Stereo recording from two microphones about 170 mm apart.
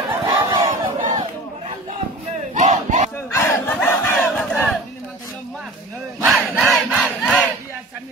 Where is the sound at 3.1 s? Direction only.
15° left (ahead or behind).